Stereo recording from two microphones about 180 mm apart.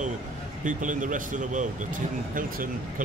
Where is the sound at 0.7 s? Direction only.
45° right (ahead or behind).